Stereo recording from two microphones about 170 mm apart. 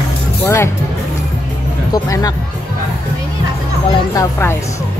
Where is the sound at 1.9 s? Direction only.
20° left (ahead or behind).